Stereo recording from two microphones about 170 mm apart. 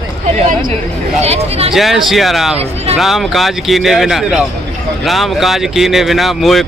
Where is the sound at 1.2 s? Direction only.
35° right (ahead or behind).